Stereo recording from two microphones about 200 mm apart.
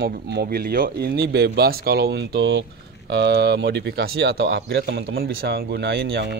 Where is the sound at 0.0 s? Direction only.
55° right (ahead or behind).